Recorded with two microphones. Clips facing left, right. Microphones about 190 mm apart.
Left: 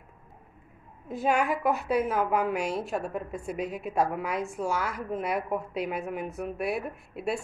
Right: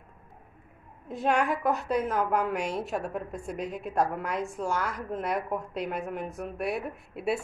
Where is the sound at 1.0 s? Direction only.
Centre (ahead or behind).